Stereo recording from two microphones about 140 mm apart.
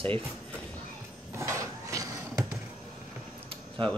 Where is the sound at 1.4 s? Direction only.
20° right (ahead or behind).